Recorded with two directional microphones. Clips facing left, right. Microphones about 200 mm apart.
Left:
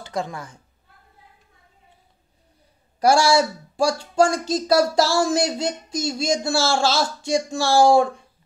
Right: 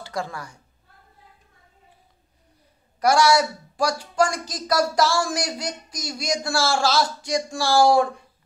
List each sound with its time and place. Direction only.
0.0 s speech: 20° left (ahead or behind)
3.0 s speech: 30° left (ahead or behind)